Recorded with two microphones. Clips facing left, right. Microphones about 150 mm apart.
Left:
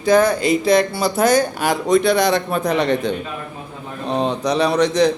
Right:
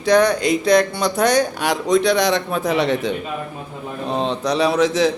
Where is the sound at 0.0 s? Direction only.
Centre (ahead or behind).